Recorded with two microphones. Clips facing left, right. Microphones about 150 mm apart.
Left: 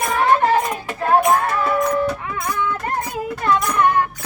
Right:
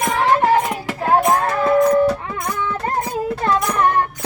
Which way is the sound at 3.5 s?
30° right (ahead or behind).